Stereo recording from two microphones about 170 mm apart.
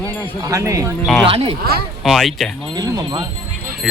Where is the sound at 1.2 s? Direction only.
30° right (ahead or behind).